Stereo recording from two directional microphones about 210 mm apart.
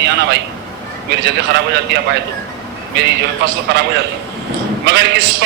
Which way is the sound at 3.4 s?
55° right (ahead or behind).